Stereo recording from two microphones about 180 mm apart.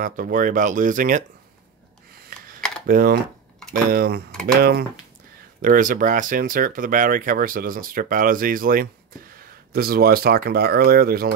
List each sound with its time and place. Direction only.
0.0 s speech: 45° right (ahead or behind)
2.9 s speech: 55° right (ahead or behind)
4.3 s speech: 5° left (ahead or behind)
4.6 s speech: 60° right (ahead or behind)
5.6 s speech: 50° right (ahead or behind)